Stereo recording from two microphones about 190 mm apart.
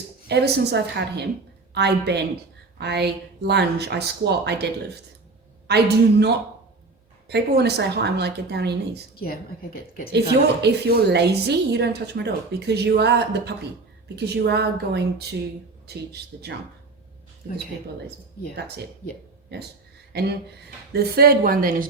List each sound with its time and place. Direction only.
0.3 s a woman's voice: 60° right (ahead or behind)
9.1 s a woman's voice: 55° left (ahead or behind)
10.1 s a woman's voice: 60° right (ahead or behind)
20.1 s a woman's voice: 60° right (ahead or behind)